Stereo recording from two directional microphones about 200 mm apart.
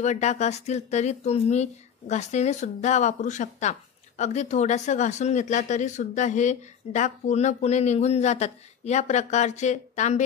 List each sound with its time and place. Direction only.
0.0 s speech: 35° left (ahead or behind)